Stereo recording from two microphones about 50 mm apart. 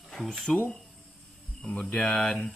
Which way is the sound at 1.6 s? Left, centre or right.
Centre.